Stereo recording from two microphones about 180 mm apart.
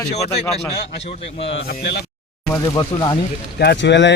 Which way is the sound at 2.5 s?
20° left (ahead or behind).